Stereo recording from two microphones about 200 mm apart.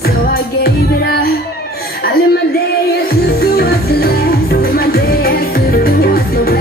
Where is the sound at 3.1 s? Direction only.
50° left (ahead or behind).